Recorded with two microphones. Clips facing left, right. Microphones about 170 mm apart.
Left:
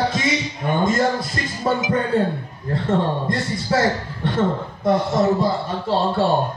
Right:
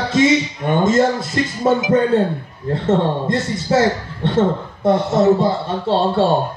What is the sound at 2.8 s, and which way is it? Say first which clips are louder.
A man's voice: right 4 dB; 25° right (ahead or behind).